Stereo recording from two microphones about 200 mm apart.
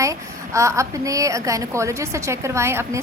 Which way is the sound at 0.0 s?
15° right (ahead or behind).